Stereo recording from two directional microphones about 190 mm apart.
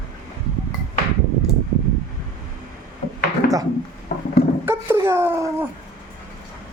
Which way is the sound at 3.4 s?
50° left (ahead or behind).